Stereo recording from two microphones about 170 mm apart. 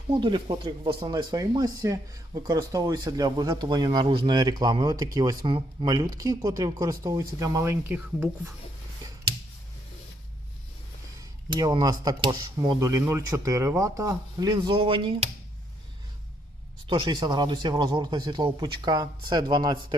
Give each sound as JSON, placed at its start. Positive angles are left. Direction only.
{"t": 0.1, "sound": "speech", "side_deg": -30}
{"t": 11.4, "sound": "speech", "side_deg": -25}
{"t": 16.8, "sound": "speech", "side_deg": -25}